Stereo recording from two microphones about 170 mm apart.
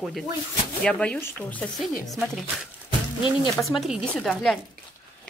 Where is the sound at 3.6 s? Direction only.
Centre (ahead or behind).